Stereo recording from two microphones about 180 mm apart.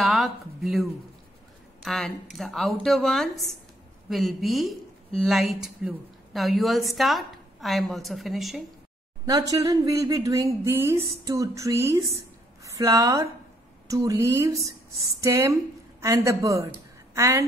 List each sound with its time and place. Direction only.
0.0 s speech: centre (ahead or behind)
9.2 s a woman's voice: 20° right (ahead or behind)